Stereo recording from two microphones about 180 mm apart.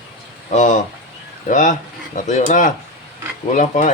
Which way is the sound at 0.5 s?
45° left (ahead or behind).